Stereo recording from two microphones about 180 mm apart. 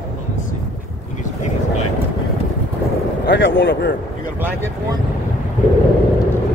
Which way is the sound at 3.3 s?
90° left.